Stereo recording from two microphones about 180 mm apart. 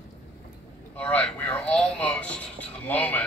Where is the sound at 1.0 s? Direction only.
5° left (ahead or behind).